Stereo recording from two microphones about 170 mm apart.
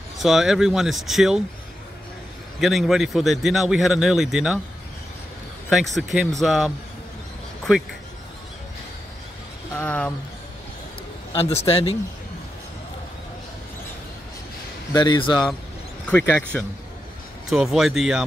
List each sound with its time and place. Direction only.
0.2 s a man's voice: centre (ahead or behind)
2.6 s a man's voice: centre (ahead or behind)
5.7 s a man's voice: centre (ahead or behind)
9.8 s speech: 5° left (ahead or behind)
11.3 s speech: 35° left (ahead or behind)
14.9 s speech: 25° left (ahead or behind)
16.1 s speech: 10° left (ahead or behind)
17.5 s a man's voice: centre (ahead or behind)